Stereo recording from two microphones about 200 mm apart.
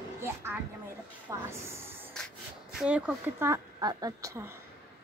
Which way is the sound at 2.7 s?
5° right (ahead or behind).